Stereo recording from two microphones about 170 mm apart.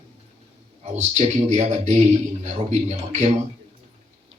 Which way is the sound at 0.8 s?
40° right (ahead or behind).